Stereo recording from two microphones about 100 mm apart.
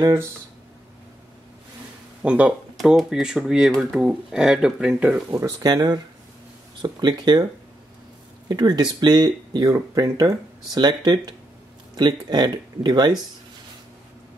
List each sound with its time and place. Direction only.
0.0 s speech: 30° right (ahead or behind)
2.2 s speech: 15° right (ahead or behind)
5.3 s speech: 40° right (ahead or behind)
8.5 s speech: 45° right (ahead or behind)